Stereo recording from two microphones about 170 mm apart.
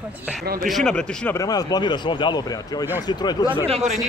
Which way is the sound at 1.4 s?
25° left (ahead or behind).